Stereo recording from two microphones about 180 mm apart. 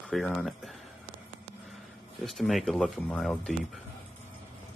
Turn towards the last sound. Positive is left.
turn(degrees=0)  # may be behind; listen again after turning